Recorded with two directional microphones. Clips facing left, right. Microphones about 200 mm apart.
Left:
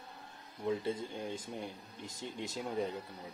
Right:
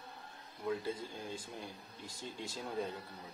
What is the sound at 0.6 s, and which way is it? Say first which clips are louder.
Speech: left 3 dB; 25° left (ahead or behind).